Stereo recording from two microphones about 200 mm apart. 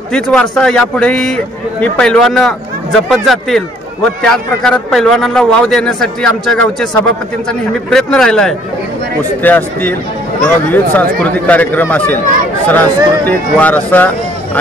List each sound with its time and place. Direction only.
0.1 s a man's voice: 5° left (ahead or behind)